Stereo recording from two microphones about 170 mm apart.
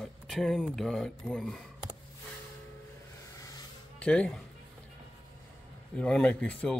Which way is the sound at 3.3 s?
20° left (ahead or behind).